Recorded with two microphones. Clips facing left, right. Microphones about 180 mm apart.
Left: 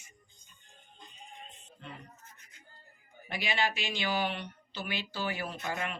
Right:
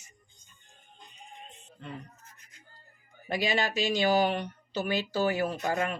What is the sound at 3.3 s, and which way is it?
Speech, 40° right (ahead or behind).